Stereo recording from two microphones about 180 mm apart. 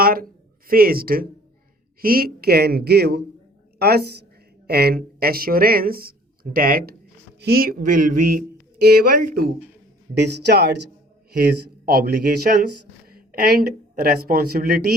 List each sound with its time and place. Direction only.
0.0 s a sound: 55° right (ahead or behind)
0.7 s speech: 55° right (ahead or behind)
8.8 s speech: 60° right (ahead or behind)
10.2 s speech: 65° right (ahead or behind)